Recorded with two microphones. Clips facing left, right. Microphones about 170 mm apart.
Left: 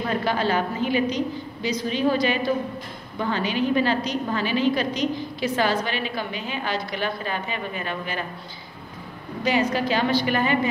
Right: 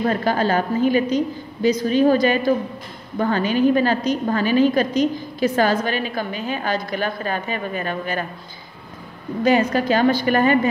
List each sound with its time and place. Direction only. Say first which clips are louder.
0.2 s a woman's voice: right 3 dB; 45° right (ahead or behind)
9.4 s a woman's voice: right 5 dB; 50° right (ahead or behind)